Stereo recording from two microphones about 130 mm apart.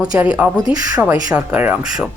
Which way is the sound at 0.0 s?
10° right (ahead or behind).